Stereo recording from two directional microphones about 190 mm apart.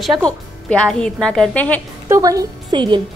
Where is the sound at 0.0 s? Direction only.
Centre (ahead or behind).